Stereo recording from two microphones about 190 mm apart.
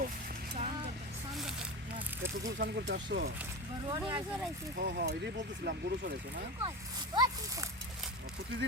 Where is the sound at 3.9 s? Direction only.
25° right (ahead or behind).